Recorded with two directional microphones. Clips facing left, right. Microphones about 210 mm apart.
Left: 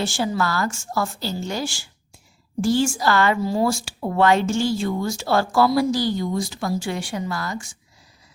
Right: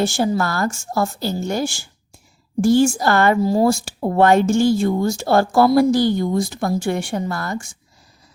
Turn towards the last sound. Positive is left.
turn(degrees=-55)  # may be behind; listen again after turning